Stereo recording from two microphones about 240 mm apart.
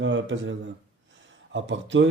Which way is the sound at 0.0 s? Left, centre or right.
Right.